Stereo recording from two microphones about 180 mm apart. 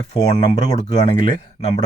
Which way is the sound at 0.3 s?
35° left (ahead or behind).